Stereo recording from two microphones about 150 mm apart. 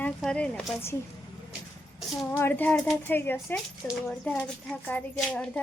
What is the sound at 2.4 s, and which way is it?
A woman's voice, 10° left (ahead or behind).